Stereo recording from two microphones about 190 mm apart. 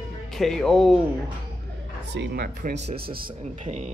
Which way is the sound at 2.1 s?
60° right (ahead or behind).